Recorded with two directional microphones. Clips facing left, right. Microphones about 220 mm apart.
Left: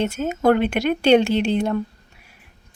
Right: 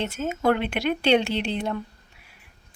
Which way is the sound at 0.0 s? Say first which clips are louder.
Left 5 dB; 45° left (ahead or behind).